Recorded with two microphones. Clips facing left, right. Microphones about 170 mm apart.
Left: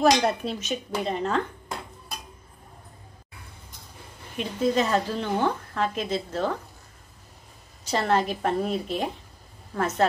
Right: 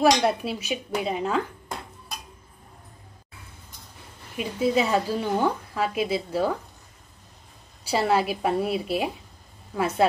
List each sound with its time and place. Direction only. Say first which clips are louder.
0.0 s a woman's voice: right 1 dB; 10° right (ahead or behind)
4.4 s a woman's voice: right 1 dB; 10° right (ahead or behind)
7.9 s a woman's voice: right 1 dB; 10° right (ahead or behind)